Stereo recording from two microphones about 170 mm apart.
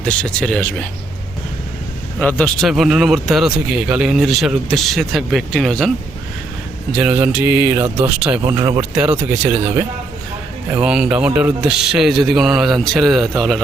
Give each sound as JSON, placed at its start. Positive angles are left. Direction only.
{"t": 0.0, "sound": "speech", "side_deg": 5}
{"t": 2.1, "sound": "speech", "side_deg": 5}
{"t": 7.0, "sound": "speech", "side_deg": -10}